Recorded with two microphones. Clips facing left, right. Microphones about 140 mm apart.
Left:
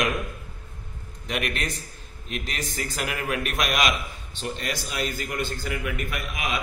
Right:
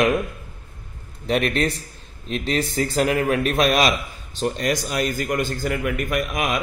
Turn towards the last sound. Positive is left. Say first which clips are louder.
# right 7 dB
turn(degrees=-45)  # may be behind; listen again after turning